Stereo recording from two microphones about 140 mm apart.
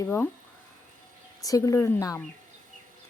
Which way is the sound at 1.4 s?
25° left (ahead or behind).